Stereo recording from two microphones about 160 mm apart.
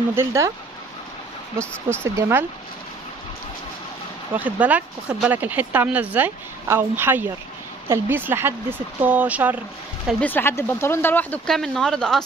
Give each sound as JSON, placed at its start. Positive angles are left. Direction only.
{"t": 0.1, "sound": "speech", "side_deg": -15}
{"t": 1.6, "sound": "speech", "side_deg": -15}
{"t": 4.3, "sound": "speech", "side_deg": -10}
{"t": 10.2, "sound": "speech", "side_deg": 15}